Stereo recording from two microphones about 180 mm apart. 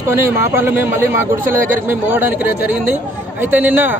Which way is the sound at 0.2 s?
10° right (ahead or behind).